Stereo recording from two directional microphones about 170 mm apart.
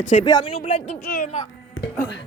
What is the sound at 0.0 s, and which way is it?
Speech, 45° left (ahead or behind).